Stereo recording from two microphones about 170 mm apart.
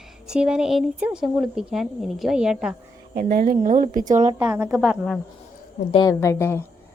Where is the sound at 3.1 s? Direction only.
60° right (ahead or behind).